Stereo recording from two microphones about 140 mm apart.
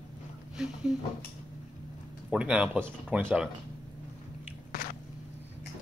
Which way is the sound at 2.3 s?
5° right (ahead or behind).